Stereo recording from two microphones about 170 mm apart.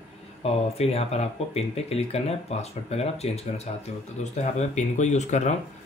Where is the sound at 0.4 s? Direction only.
35° left (ahead or behind).